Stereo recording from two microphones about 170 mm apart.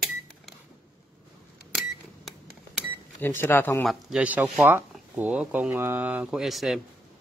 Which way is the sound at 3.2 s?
15° left (ahead or behind).